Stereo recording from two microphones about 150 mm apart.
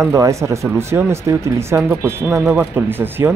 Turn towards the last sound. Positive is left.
turn(degrees=-15)  # may be behind; listen again after turning